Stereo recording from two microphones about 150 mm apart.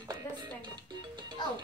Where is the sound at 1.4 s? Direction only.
30° left (ahead or behind).